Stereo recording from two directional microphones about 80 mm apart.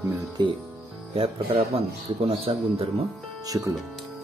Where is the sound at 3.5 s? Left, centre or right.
Right.